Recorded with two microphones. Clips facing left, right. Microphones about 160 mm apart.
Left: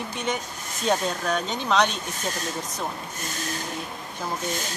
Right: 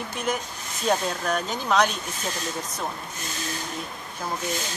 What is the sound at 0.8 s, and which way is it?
Speech, 5° right (ahead or behind).